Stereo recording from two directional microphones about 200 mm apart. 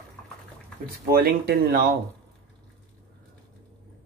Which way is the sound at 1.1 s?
50° right (ahead or behind).